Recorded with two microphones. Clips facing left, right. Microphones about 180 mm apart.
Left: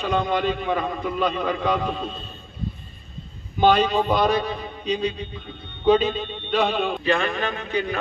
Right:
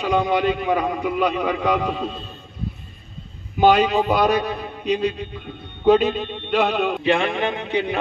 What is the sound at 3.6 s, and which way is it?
A man's voice, 10° right (ahead or behind).